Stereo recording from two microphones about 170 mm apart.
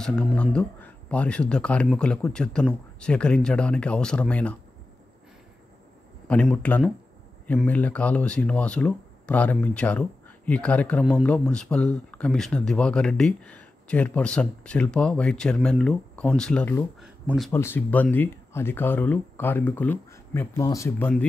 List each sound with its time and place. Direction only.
0.0 s speech: 5° left (ahead or behind)
6.2 s speech: 10° left (ahead or behind)
17.0 s a sound: 5° right (ahead or behind)
17.5 s speech: 15° left (ahead or behind)